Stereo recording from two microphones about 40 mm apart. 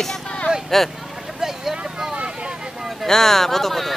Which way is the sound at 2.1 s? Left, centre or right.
Right.